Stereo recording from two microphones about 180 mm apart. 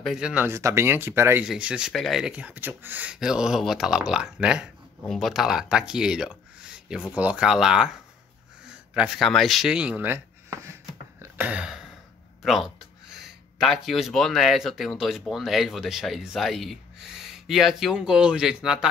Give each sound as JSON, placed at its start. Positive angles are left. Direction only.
{"t": 0.0, "sound": "speech", "side_deg": -5}
{"t": 8.6, "sound": "a sound", "side_deg": -5}
{"t": 12.4, "sound": "speech", "side_deg": 0}